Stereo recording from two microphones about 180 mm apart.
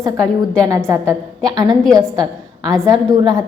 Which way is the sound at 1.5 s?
20° right (ahead or behind).